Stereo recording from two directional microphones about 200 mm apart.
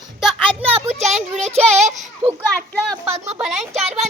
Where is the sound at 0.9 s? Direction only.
35° right (ahead or behind).